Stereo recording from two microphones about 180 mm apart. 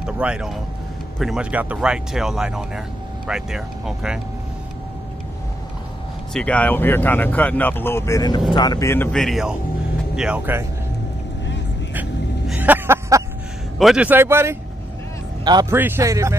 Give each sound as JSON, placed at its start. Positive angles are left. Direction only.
{"t": 0.0, "sound": "speech", "side_deg": -5}
{"t": 6.3, "sound": "speech", "side_deg": 5}
{"t": 11.9, "sound": "vehicle", "side_deg": -10}
{"t": 13.7, "sound": "speech", "side_deg": -5}
{"t": 15.7, "sound": "speech", "side_deg": -15}